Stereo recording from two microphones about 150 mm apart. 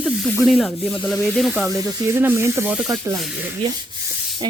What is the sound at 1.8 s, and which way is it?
Speech, 15° right (ahead or behind).